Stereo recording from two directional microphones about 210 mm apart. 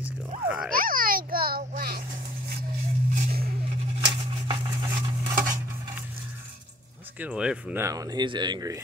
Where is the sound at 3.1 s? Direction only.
40° right (ahead or behind).